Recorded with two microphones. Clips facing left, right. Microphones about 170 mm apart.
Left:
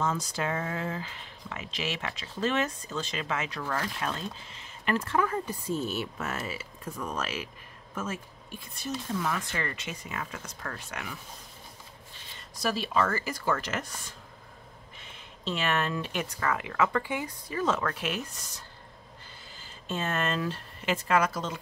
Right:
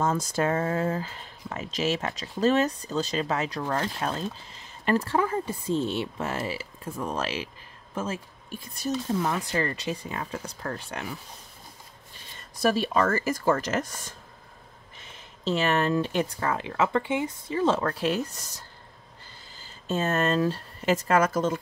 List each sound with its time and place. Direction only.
0.0 s speech: 50° right (ahead or behind); by 11.1 s 35° right (ahead or behind)
12.4 s speech: 45° right (ahead or behind)
19.9 s speech: 40° right (ahead or behind)